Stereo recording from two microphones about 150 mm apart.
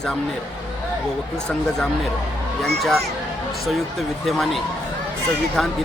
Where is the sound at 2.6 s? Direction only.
Centre (ahead or behind).